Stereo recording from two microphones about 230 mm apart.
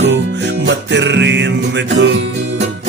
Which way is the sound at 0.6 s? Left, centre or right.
Right.